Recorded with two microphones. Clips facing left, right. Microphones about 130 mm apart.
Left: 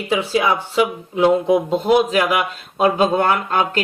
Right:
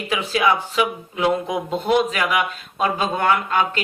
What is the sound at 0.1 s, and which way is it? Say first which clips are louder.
Speech: left 2 dB; 25° left (ahead or behind).